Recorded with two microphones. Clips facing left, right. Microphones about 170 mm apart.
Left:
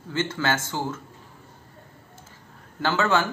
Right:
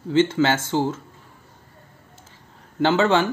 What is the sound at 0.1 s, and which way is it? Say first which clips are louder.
Speech: right 8 dB; 25° right (ahead or behind).